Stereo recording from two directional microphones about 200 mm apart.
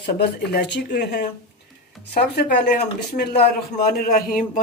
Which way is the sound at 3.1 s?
50° left (ahead or behind).